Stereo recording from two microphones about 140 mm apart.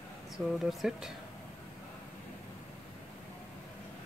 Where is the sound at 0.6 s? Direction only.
Centre (ahead or behind).